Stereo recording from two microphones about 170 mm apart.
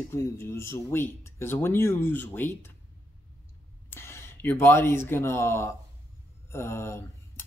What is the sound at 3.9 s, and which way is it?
Speech, 15° left (ahead or behind).